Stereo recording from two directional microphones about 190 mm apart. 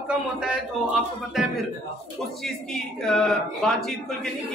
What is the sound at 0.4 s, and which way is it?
A woman's voice, 5° right (ahead or behind).